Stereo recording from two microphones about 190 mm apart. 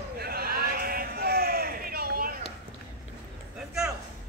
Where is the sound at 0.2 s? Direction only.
50° right (ahead or behind).